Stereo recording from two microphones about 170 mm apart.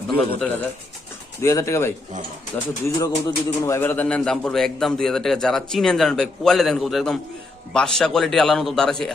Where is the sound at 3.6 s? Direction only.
15° left (ahead or behind).